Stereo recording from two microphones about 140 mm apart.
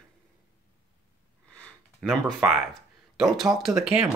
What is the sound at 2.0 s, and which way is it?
Speech, centre (ahead or behind).